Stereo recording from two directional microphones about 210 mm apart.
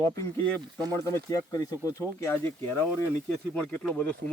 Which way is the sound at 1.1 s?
15° left (ahead or behind).